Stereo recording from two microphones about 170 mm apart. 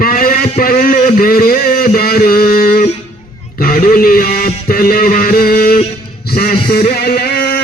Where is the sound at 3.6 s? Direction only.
55° left (ahead or behind).